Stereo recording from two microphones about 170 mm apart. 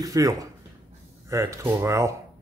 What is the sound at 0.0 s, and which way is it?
A man's voice, 20° right (ahead or behind).